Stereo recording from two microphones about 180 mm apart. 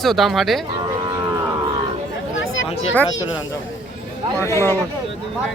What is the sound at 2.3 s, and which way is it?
Chatter, 90° left.